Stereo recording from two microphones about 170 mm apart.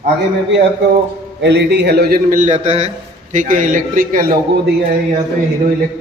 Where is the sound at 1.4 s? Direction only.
85° right; by 4.4 s 55° right (ahead or behind).